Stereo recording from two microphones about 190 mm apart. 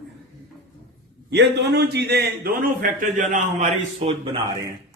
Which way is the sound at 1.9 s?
60° right (ahead or behind).